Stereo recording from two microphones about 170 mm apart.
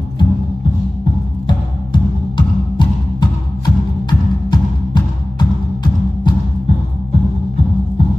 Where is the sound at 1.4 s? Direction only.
25° left (ahead or behind).